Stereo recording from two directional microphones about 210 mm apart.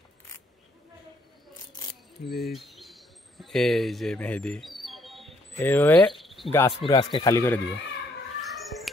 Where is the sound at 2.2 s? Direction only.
45° left (ahead or behind).